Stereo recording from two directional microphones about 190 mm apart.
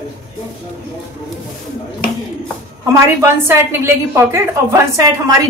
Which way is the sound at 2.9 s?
15° right (ahead or behind).